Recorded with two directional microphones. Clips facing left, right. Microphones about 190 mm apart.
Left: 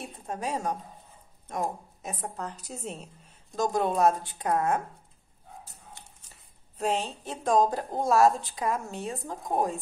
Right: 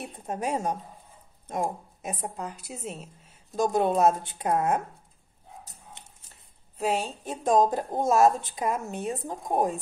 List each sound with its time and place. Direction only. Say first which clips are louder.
0.3 s a woman's voice: right 2 dB; 20° right (ahead or behind); by 3.3 s 5° right (ahead or behind)
3.5 s a woman's voice: right 3 dB; 20° right (ahead or behind)
6.8 s a woman's voice: right 1 dB; 10° right (ahead or behind)